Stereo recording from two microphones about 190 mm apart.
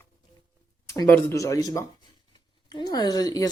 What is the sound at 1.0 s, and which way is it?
Speech, 10° left (ahead or behind).